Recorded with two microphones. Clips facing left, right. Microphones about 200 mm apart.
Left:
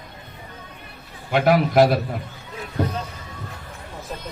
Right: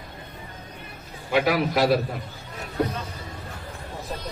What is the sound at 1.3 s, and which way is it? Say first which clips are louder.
Speech: left 3 dB; 50° left (ahead or behind).